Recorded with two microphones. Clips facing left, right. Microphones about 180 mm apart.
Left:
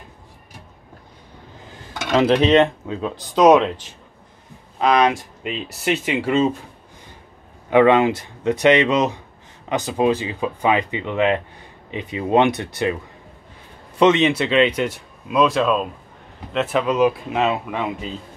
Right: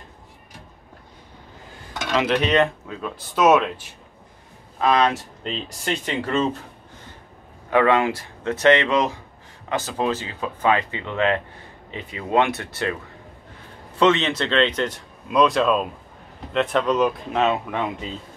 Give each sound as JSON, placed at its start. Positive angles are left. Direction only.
{"t": 2.1, "sound": "speech", "side_deg": 30}
{"t": 3.3, "sound": "speech", "side_deg": 15}
{"t": 7.7, "sound": "speech", "side_deg": 20}
{"t": 13.9, "sound": "speech", "side_deg": 15}